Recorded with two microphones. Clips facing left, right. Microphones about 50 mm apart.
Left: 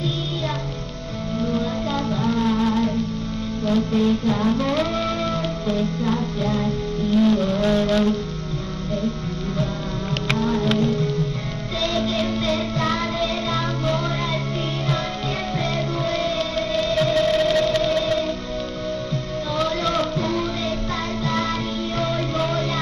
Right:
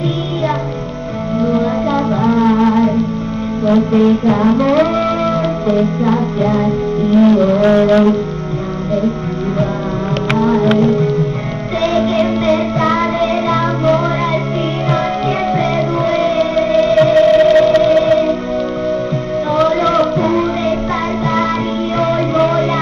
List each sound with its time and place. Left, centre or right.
1.9 s music: right
5.8 s music: right
10.7 s music: right
12.9 s music: right
16.1 s music: right
19.9 s music: right
22.0 s music: right